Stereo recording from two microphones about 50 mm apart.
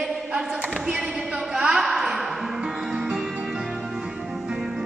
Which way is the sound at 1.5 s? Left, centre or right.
Centre.